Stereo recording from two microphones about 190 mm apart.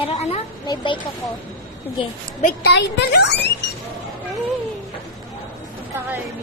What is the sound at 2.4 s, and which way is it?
Speech, 60° left (ahead or behind).